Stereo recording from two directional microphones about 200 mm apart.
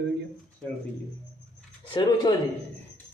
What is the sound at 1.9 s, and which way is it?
Speech, 20° left (ahead or behind).